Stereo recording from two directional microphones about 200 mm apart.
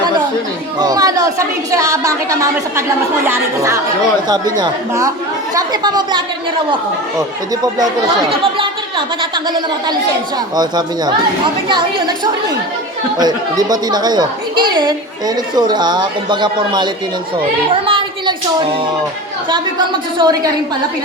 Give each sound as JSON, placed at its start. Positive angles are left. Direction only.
{"t": 0.8, "sound": "a woman's voice", "side_deg": -20}
{"t": 17.8, "sound": "a sound", "side_deg": -25}
{"t": 20.1, "sound": "a woman's voice", "side_deg": -20}